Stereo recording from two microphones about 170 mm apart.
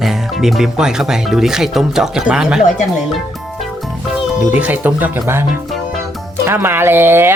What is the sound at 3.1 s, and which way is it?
Music, centre (ahead or behind).